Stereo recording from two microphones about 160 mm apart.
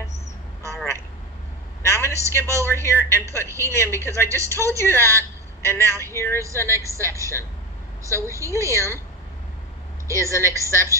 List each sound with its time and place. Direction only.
1.8 s a sound: 15° left (ahead or behind)
2.3 s a woman's voice: 15° left (ahead or behind)
3.4 s a woman's voice: 15° right (ahead or behind)
3.7 s a woman's voice: 15° left (ahead or behind)
8.2 s a woman's voice: 20° right (ahead or behind)
8.6 s a woman's voice: 15° left (ahead or behind)
10.1 s a woman's voice: 15° left (ahead or behind)